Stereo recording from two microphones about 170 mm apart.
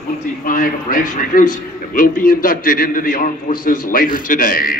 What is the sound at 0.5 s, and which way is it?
A man's voice, 55° left (ahead or behind).